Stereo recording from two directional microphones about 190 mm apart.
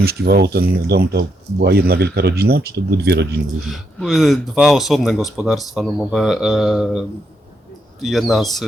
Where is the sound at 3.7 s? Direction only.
Centre (ahead or behind).